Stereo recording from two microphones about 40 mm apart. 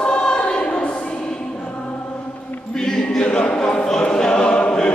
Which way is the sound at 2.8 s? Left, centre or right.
Left.